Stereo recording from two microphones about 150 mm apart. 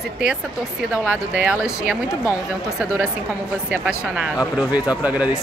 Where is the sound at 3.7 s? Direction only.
10° right (ahead or behind).